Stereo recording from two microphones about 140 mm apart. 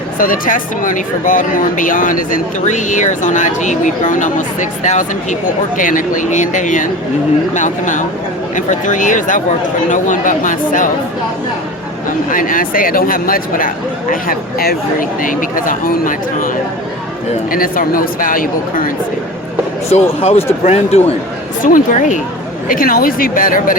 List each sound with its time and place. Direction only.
0.2 s speech: 80° left
12.3 s speech: 75° left (ahead or behind); by 14.8 s 90° left
15.2 s speech: 75° left (ahead or behind)
17.5 s a woman's voice: 90° left
19.9 s speech: 50° left (ahead or behind)
21.6 s speech: 75° left (ahead or behind)
22.7 s a woman's voice: 90° left